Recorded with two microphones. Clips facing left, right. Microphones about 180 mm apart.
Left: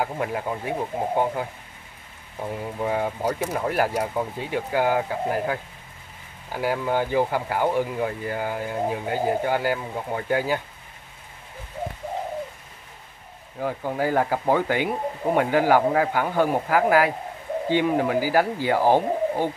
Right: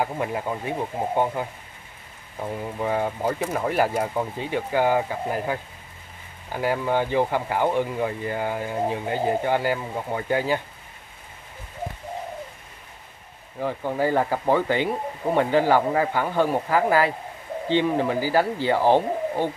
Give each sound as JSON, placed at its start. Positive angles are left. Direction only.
{"t": 0.0, "sound": "speech", "side_deg": 0}
{"t": 13.6, "sound": "speech", "side_deg": 5}